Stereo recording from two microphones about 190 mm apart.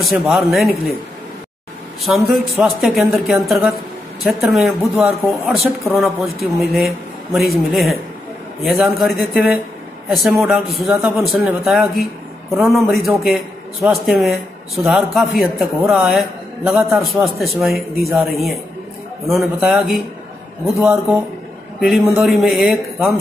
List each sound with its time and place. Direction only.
0.0 s a man's voice: centre (ahead or behind)
2.0 s a man's voice: centre (ahead or behind)